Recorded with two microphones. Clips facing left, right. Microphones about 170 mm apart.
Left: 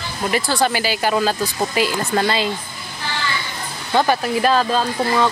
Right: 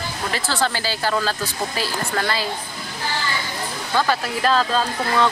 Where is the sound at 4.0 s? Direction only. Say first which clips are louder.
Left 4 dB; 15° left (ahead or behind).